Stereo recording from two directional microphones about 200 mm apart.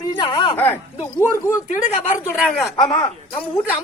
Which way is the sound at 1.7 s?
40° left (ahead or behind).